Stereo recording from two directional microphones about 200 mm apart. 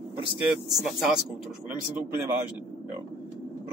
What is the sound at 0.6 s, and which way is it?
A man's voice, centre (ahead or behind).